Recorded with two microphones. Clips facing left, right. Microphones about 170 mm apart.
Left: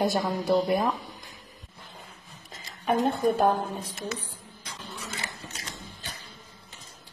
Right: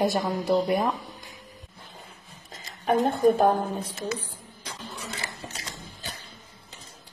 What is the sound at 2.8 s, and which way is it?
Speech, 40° right (ahead or behind).